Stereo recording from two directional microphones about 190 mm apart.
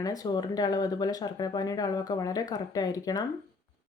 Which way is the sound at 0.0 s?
20° left (ahead or behind).